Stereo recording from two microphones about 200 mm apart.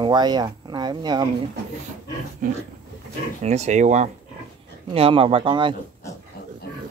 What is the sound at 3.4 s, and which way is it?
Speech, 35° right (ahead or behind).